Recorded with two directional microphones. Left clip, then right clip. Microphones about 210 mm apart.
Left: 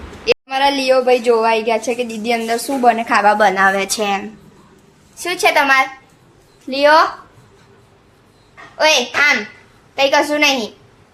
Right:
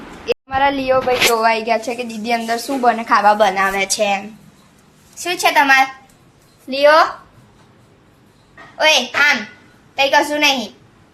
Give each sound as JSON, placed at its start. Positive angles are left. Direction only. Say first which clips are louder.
{"t": 0.4, "sound": "a woman's voice", "louder": "right 1 dB", "side_deg": 20}
{"t": 8.8, "sound": "a woman's voice", "louder": "even", "side_deg": 15}